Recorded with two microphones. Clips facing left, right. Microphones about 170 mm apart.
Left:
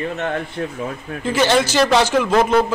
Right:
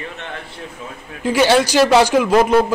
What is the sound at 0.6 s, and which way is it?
Speech, 60° left (ahead or behind).